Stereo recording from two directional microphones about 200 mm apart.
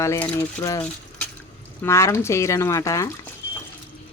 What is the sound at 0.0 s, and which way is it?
Speech, 10° left (ahead or behind).